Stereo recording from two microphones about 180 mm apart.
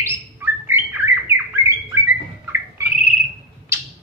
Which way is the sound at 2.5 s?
15° right (ahead or behind).